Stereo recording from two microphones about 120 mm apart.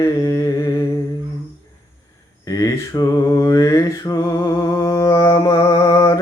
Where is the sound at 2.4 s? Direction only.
30° left (ahead or behind).